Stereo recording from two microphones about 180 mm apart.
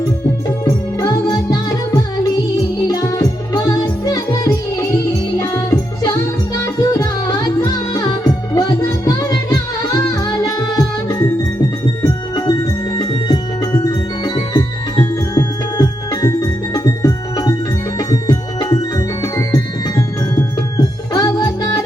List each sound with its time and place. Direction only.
0.6 s music: 20° left (ahead or behind)
2.8 s music: 20° left (ahead or behind)